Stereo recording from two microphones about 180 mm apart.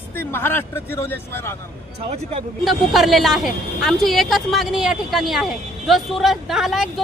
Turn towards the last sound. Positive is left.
turn(degrees=0)  # may be behind; listen again after turning